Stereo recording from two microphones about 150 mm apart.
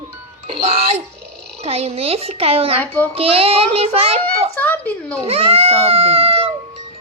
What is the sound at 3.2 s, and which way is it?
Speech, 40° right (ahead or behind).